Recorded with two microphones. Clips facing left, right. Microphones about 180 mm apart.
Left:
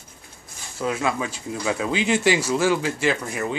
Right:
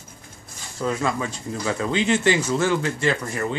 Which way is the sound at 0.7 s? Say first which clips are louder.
Even; 5° left (ahead or behind).